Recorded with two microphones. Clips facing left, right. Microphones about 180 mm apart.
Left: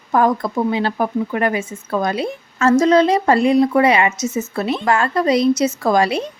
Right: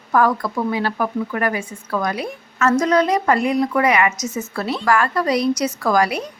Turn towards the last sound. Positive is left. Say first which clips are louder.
# left 2 dB
turn(degrees=25)  # may be behind; listen again after turning